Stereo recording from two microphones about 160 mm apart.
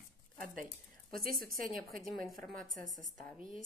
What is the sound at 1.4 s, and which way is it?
Speech, 65° right (ahead or behind).